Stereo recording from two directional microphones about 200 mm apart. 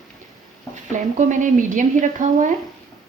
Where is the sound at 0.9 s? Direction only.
40° right (ahead or behind).